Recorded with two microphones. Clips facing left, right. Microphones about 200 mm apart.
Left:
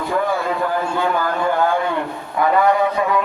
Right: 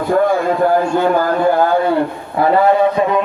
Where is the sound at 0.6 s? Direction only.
40° right (ahead or behind).